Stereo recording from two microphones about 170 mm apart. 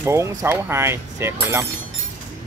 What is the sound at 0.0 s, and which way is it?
Speech, 15° right (ahead or behind).